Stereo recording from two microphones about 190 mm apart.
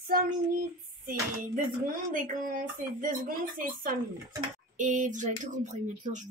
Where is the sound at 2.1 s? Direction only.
45° right (ahead or behind).